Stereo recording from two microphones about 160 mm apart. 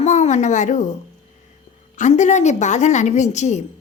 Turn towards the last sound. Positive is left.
turn(degrees=45)  # may be behind; listen again after turning